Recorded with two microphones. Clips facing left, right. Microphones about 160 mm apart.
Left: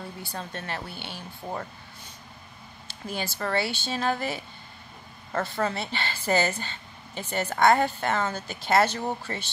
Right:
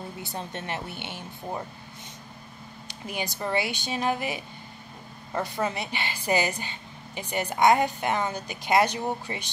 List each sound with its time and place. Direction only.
0.2 s speech: 20° right (ahead or behind)
2.9 s a woman's voice: 15° right (ahead or behind)